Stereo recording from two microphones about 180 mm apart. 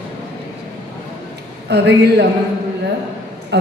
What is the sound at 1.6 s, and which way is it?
Speech, 70° right (ahead or behind).